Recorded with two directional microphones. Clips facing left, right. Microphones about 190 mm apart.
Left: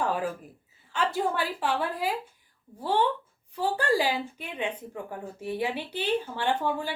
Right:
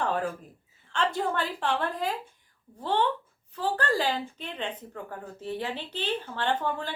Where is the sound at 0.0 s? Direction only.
10° left (ahead or behind).